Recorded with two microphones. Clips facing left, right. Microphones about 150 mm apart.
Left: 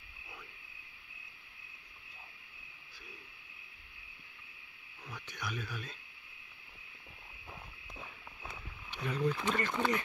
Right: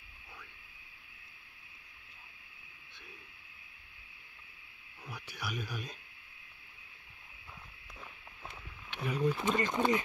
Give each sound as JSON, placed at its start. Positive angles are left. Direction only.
{"t": 5.0, "sound": "speech", "side_deg": -10}
{"t": 9.0, "sound": "speech", "side_deg": -10}